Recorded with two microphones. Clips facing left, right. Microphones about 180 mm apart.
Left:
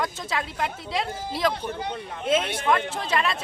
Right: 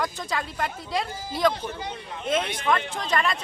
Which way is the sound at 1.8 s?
60° left (ahead or behind).